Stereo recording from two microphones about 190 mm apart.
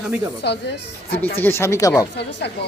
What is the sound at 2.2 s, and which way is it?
Speech, 65° left (ahead or behind).